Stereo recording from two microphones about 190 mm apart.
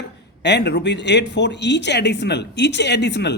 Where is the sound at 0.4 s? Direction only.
65° left (ahead or behind).